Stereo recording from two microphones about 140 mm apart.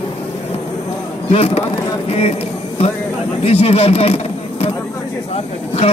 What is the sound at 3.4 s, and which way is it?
Speech, 45° left (ahead or behind).